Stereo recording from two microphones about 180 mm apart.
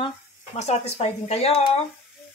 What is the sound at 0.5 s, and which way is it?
Speech, 35° left (ahead or behind).